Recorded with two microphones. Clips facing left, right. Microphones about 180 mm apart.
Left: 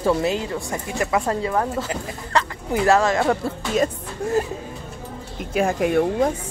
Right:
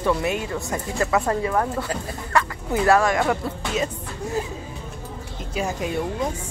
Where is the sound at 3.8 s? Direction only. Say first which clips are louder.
Left 5 dB; 50° left (ahead or behind).